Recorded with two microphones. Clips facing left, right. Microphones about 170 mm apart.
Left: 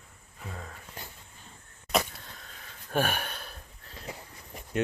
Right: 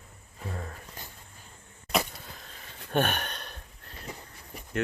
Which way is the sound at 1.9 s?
Centre (ahead or behind).